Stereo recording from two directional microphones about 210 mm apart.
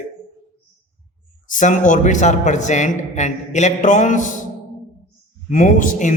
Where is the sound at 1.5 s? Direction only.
35° left (ahead or behind).